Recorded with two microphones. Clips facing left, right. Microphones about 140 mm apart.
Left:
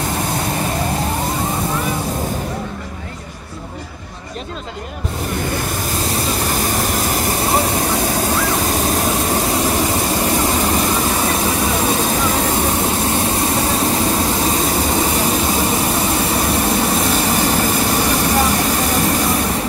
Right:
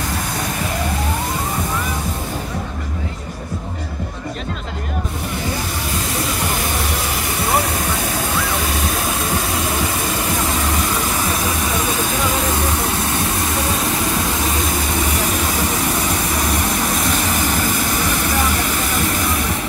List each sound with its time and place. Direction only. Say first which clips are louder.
6.6 s vehicle: left 3 dB; 40° left (ahead or behind)
14.7 s vehicle: left 3 dB; 30° left (ahead or behind)